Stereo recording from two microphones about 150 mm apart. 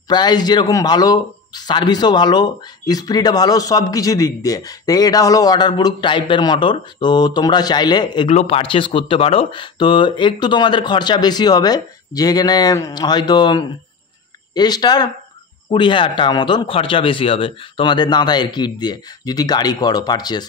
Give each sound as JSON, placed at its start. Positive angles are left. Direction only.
{"t": 0.1, "sound": "speech", "side_deg": 30}
{"t": 8.3, "sound": "speech", "side_deg": 45}